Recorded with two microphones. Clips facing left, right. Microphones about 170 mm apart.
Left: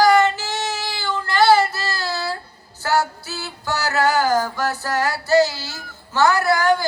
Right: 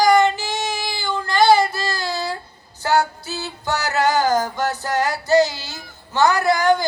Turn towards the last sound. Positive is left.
turn(degrees=-20)  # may be behind; listen again after turning